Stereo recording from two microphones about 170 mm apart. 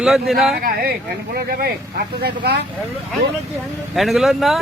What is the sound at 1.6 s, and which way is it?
Speech, 70° right (ahead or behind).